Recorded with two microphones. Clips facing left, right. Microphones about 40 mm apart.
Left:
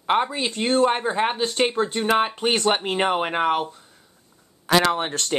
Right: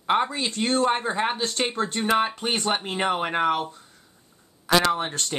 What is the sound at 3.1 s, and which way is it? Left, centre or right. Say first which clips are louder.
Speech: even; left.